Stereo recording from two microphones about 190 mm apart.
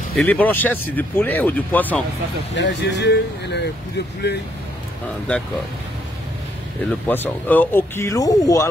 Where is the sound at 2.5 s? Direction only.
70° left (ahead or behind).